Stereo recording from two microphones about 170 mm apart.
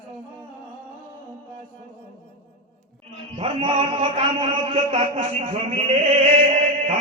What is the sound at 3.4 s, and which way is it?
A man's voice, 30° right (ahead or behind).